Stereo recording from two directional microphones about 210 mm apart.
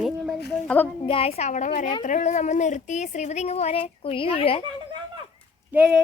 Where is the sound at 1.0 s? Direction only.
25° left (ahead or behind).